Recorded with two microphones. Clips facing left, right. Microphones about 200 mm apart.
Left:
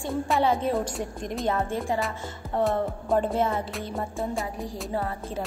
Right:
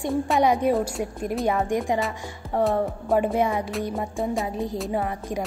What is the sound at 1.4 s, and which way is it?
A woman's voice, 15° right (ahead or behind).